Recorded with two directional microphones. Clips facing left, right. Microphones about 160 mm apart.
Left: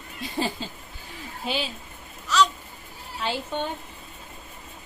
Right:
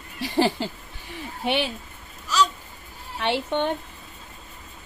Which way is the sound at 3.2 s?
70° right (ahead or behind).